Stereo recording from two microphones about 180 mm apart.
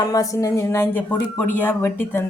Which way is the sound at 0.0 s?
20° left (ahead or behind).